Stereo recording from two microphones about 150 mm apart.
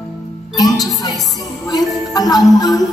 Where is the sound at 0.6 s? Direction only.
25° left (ahead or behind).